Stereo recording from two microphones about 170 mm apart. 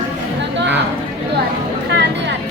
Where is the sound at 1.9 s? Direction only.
90° right.